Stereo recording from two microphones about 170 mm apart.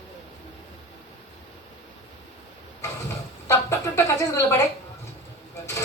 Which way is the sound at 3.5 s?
15° left (ahead or behind).